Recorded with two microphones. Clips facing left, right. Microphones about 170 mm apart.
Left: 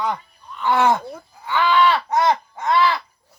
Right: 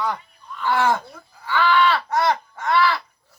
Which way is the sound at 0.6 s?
20° left (ahead or behind).